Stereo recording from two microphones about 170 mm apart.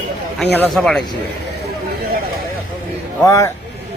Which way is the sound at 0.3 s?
10° left (ahead or behind).